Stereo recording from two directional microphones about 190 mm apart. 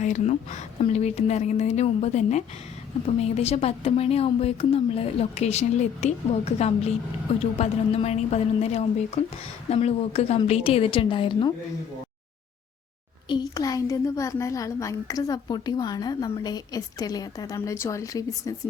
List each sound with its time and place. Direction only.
0.0 s a woman's voice: 40° left (ahead or behind)
13.2 s a woman's voice: 20° left (ahead or behind)